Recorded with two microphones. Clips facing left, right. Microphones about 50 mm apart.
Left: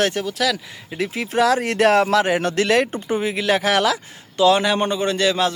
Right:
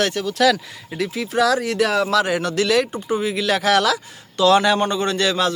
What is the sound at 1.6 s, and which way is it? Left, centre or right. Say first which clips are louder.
Speech: left 3 dB; left.